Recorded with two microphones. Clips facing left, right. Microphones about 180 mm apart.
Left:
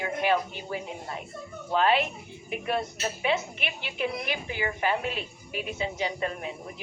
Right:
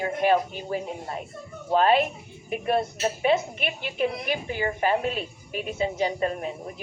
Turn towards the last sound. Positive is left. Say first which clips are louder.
# right 4 dB
turn(degrees=-40)  # may be behind; listen again after turning